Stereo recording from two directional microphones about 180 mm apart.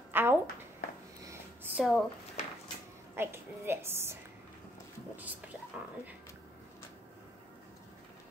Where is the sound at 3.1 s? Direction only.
15° right (ahead or behind).